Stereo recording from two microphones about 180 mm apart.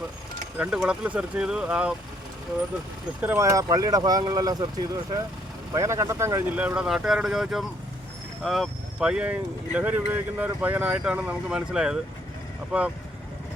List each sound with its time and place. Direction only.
0.6 s speech: 5° right (ahead or behind)
3.2 s speech: 15° right (ahead or behind)
5.7 s speech: 15° right (ahead or behind)